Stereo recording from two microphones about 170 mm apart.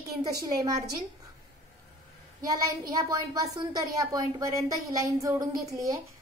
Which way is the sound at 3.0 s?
20° right (ahead or behind).